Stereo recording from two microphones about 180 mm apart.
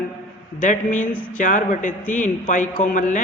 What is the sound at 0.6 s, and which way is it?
Speech, 45° left (ahead or behind).